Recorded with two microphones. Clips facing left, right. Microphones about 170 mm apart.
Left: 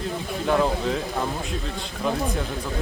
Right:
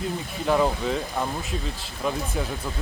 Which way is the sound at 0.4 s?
Centre (ahead or behind).